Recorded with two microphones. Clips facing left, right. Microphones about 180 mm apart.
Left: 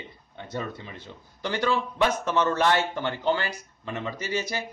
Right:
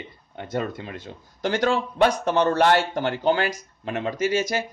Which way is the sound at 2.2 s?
35° right (ahead or behind).